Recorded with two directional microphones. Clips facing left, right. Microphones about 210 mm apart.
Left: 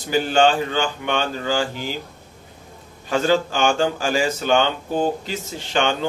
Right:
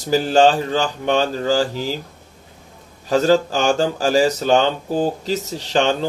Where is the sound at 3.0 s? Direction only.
35° right (ahead or behind).